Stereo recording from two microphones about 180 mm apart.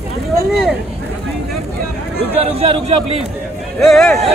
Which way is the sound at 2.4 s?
35° right (ahead or behind).